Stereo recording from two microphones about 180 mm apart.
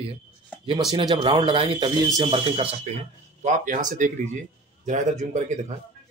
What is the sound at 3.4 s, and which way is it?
Speech, 45° right (ahead or behind).